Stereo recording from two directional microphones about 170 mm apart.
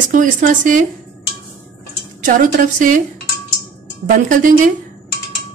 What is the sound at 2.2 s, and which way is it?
Speech, 50° right (ahead or behind).